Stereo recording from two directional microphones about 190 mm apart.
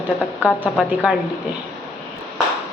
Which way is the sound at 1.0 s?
5° right (ahead or behind).